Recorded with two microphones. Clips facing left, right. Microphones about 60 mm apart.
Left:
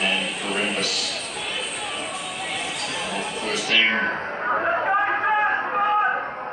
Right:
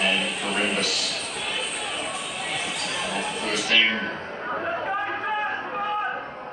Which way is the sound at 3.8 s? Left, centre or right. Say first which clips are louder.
Left 4 dB; left.